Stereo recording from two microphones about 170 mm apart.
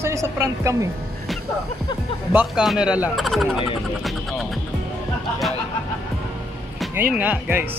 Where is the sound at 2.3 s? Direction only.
5° right (ahead or behind).